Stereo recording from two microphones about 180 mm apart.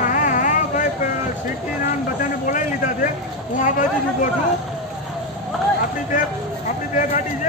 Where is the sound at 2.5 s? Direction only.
45° left (ahead or behind).